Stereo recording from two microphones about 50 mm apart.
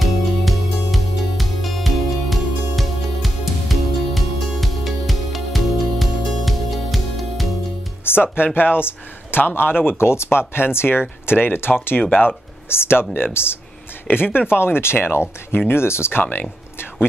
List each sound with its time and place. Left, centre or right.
0.0 s music: centre
8.0 s speech: left
12.0 s speech: left
12.6 s speech: left
16.2 s speech: left